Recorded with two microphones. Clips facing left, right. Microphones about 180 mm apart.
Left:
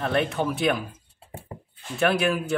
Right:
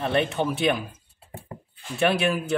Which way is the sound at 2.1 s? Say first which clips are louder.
Even; centre (ahead or behind).